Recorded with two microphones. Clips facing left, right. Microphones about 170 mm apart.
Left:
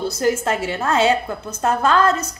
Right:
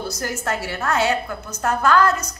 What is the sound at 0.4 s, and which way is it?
A woman's voice, 25° left (ahead or behind).